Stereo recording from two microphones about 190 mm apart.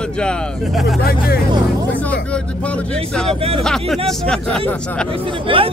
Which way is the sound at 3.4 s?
30° right (ahead or behind).